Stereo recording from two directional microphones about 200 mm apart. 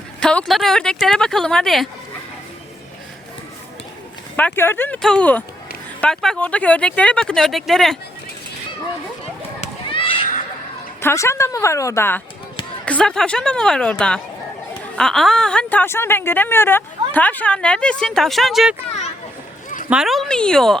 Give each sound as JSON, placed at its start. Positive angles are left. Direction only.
{"t": 0.2, "sound": "a woman's voice", "side_deg": 5}
{"t": 4.4, "sound": "a woman's voice", "side_deg": 10}
{"t": 9.6, "sound": "a sound", "side_deg": 25}
{"t": 11.0, "sound": "a woman's voice", "side_deg": 15}
{"t": 14.9, "sound": "a woman's voice", "side_deg": 0}
{"t": 19.9, "sound": "a woman's voice", "side_deg": 0}